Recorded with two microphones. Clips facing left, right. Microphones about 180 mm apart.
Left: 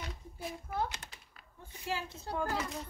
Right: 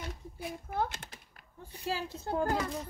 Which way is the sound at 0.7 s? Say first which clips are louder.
Right 3 dB; 50° right (ahead or behind).